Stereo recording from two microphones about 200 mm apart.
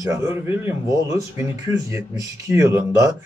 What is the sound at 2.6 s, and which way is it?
Speech, 15° right (ahead or behind).